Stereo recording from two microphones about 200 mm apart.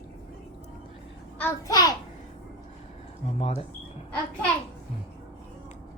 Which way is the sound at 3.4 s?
30° left (ahead or behind).